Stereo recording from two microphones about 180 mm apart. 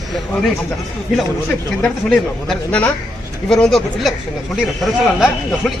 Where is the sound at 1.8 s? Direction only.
5° left (ahead or behind).